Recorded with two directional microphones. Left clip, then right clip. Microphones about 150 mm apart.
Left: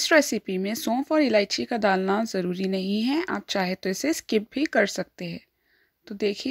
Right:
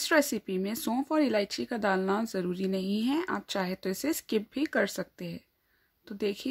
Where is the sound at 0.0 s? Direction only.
25° left (ahead or behind).